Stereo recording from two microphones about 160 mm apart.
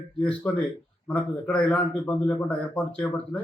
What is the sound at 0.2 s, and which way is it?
Speech, 10° left (ahead or behind).